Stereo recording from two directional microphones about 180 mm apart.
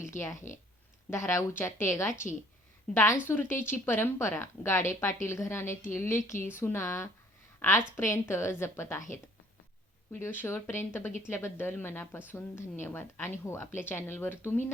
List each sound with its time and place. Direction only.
0.1 s speech: 45° left (ahead or behind)
1.1 s a woman's voice: 15° left (ahead or behind)
10.1 s a woman's voice: 10° left (ahead or behind)